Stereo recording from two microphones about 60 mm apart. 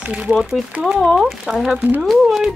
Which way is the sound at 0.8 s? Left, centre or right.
Centre.